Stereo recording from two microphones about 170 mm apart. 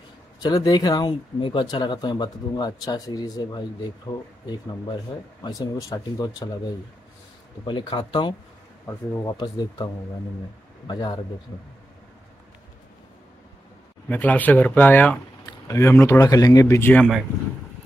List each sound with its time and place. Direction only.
0.4 s speech: 25° left (ahead or behind)
7.6 s speech: 25° left (ahead or behind)
10.9 s speech: 25° left (ahead or behind)
14.0 s speech: 10° left (ahead or behind)